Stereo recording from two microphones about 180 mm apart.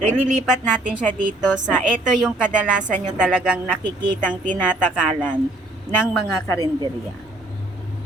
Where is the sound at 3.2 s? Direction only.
5° right (ahead or behind).